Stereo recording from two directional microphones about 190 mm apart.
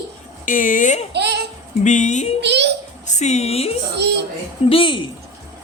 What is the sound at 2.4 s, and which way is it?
Speech, 65° right (ahead or behind).